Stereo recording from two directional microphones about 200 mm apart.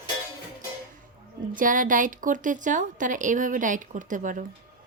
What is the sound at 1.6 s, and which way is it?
A woman's voice, 40° right (ahead or behind).